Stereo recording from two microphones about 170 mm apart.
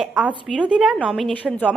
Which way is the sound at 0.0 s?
5° right (ahead or behind).